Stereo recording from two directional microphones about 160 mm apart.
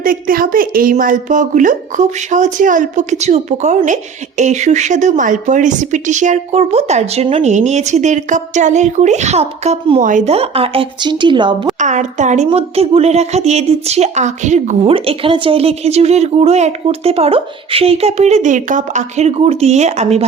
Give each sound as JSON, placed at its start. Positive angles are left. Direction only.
{"t": 0.0, "sound": "speech", "side_deg": -60}
{"t": 10.0, "sound": "speech", "side_deg": -55}
{"t": 11.8, "sound": "speech", "side_deg": -50}
{"t": 12.5, "sound": "speech", "side_deg": -40}
{"t": 14.9, "sound": "speech", "side_deg": -35}